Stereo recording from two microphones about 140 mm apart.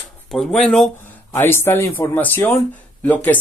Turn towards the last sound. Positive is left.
turn(degrees=10)  # may be behind; listen again after turning